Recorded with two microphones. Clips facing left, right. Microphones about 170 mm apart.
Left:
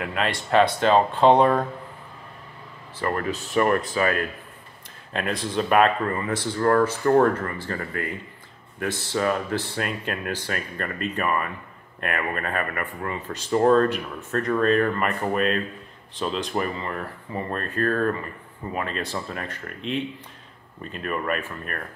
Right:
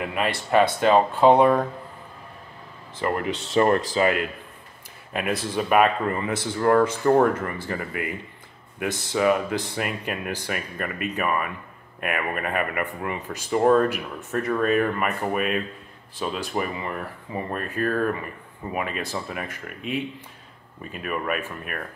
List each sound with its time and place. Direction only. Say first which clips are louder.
0.0 s speech: right 1 dB; 10° right (ahead or behind)
3.0 s speech: right 1 dB; 15° right (ahead or behind)
3.3 s speech: even; 80° right
3.5 s speech: right 2 dB; 30° right (ahead or behind)
5.1 s speech: even; 10° right (ahead or behind)